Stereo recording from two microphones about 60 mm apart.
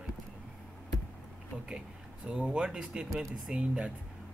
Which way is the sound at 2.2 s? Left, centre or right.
Centre.